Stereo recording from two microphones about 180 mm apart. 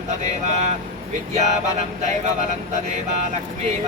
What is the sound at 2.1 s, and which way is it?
Speech, 40° right (ahead or behind).